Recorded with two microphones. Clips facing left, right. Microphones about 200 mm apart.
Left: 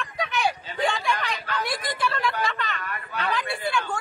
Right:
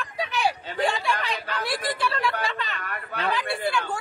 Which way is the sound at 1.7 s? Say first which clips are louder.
Right 3 dB; 30° right (ahead or behind).